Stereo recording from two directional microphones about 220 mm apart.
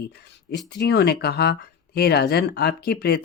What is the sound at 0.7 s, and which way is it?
Speech, 50° left (ahead or behind).